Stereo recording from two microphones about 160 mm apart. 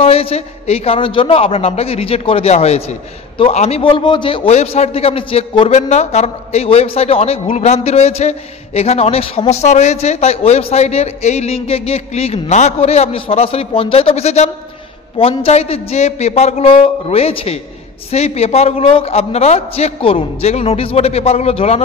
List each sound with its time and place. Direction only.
0.0 s a man's voice: 35° left (ahead or behind)
5.7 s a man's voice: 45° left (ahead or behind)